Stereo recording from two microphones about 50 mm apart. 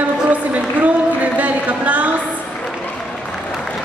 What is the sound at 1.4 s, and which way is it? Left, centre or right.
Speech, right.